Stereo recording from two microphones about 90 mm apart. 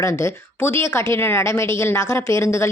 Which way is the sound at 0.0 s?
30° left (ahead or behind).